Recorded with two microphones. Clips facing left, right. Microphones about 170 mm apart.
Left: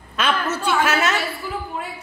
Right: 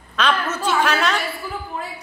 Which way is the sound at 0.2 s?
10° left (ahead or behind).